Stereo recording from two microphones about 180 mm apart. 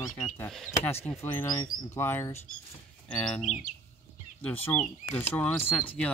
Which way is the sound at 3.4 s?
45° left (ahead or behind).